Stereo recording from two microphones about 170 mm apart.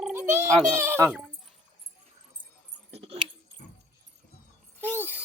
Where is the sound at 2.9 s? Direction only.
35° right (ahead or behind).